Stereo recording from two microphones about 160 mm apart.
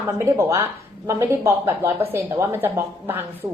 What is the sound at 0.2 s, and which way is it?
A woman's voice, 15° right (ahead or behind).